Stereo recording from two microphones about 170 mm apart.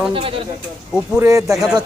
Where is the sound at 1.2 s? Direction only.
15° right (ahead or behind).